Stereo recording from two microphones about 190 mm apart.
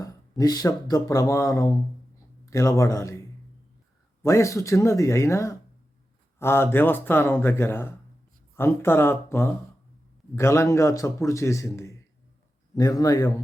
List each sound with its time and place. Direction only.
0.0 s a man's voice: 20° left (ahead or behind)